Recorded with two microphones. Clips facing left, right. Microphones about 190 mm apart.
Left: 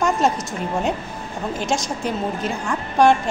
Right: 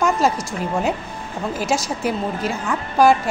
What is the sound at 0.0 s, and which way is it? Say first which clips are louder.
A woman's voice: right 1 dB; centre (ahead or behind).